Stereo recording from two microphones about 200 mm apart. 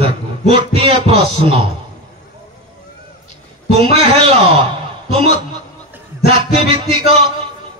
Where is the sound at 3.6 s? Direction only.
30° right (ahead or behind).